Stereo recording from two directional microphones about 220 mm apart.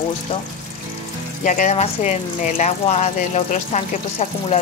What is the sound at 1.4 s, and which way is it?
Speech, 35° left (ahead or behind).